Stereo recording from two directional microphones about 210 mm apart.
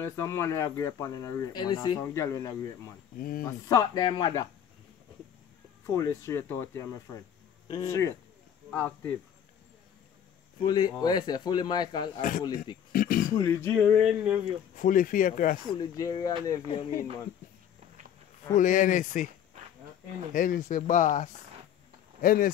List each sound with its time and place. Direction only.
0.0 s speech: 15° left (ahead or behind)
3.2 s speech: 40° left (ahead or behind)
3.4 s speech: 15° left (ahead or behind)
5.9 s speech: 15° left (ahead or behind)
10.6 s speech: 20° left (ahead or behind)
12.2 s speech: 40° left (ahead or behind)
12.9 s a sound: 40° left (ahead or behind)
13.3 s speech: 15° left (ahead or behind)
14.8 s speech: 40° left (ahead or behind)
15.8 s speech: 15° left (ahead or behind)
18.6 s speech: 40° left (ahead or behind)
20.3 s speech: 40° left (ahead or behind)